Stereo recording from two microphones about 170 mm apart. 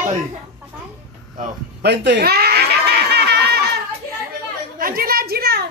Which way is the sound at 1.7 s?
90° right.